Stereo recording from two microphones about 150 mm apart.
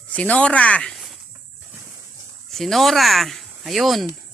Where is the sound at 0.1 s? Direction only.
10° left (ahead or behind).